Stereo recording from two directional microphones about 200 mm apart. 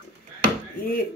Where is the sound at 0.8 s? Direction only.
45° left (ahead or behind).